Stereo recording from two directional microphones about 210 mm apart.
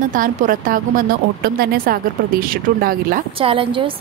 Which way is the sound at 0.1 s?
40° right (ahead or behind).